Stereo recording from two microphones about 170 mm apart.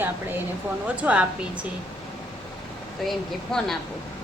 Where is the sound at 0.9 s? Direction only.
5° right (ahead or behind).